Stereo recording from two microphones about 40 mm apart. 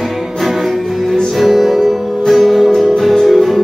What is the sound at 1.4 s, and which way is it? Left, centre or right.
Music, centre.